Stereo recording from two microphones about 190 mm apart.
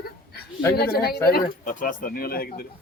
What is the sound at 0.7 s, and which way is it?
A woman's voice, 55° left (ahead or behind).